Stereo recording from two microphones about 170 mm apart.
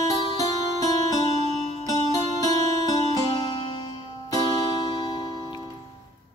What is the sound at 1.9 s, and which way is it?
Music, 20° left (ahead or behind).